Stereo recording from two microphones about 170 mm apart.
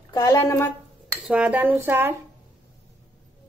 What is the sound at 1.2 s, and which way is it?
Speech, 10° right (ahead or behind).